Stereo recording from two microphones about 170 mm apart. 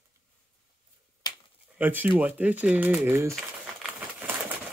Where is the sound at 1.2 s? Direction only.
25° left (ahead or behind).